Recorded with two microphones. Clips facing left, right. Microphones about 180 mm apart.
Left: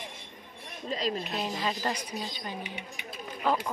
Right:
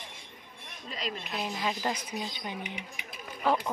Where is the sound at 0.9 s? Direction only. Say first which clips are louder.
Left 6 dB; 35° left (ahead or behind).